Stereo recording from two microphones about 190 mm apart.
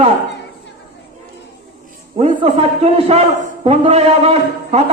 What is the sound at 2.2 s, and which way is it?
A man's voice, 30° right (ahead or behind).